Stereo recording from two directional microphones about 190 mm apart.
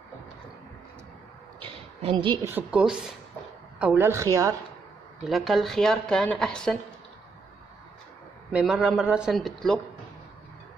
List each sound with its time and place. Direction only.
1.6 s a sound: 30° right (ahead or behind)
2.4 s a woman's voice: 10° right (ahead or behind)
5.3 s a woman's voice: centre (ahead or behind)
8.5 s a woman's voice: 5° right (ahead or behind)